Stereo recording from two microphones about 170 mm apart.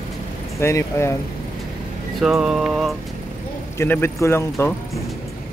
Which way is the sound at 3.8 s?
15° left (ahead or behind).